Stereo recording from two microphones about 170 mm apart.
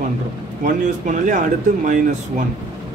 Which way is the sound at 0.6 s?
50° right (ahead or behind).